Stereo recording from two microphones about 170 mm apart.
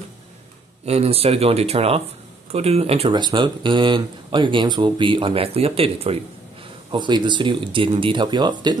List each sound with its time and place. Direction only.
0.8 s speech: 35° right (ahead or behind)